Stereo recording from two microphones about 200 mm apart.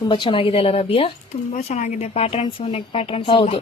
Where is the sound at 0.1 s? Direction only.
25° left (ahead or behind).